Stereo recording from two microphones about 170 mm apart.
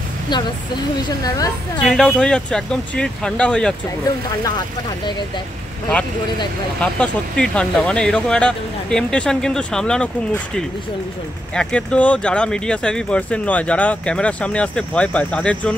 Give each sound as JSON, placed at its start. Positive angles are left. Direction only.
{"t": 1.0, "sound": "a woman's voice", "side_deg": 20}
{"t": 1.8, "sound": "speech", "side_deg": 5}
{"t": 6.8, "sound": "speech", "side_deg": 5}